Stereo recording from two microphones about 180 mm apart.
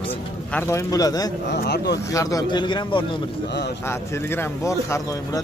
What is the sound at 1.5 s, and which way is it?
Speech, 70° left (ahead or behind).